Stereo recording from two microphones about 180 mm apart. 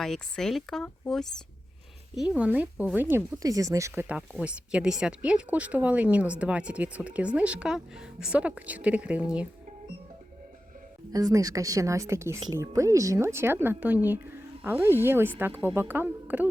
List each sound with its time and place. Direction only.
0.0 s speech: centre (ahead or behind)
11.1 s speech: 20° right (ahead or behind)